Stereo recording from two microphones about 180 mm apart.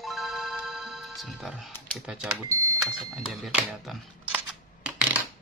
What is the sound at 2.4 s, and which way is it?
Speech, 15° right (ahead or behind).